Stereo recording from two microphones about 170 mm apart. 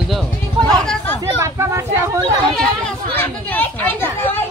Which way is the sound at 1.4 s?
15° right (ahead or behind).